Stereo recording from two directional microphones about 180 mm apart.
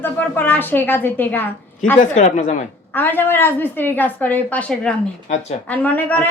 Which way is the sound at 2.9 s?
10° left (ahead or behind).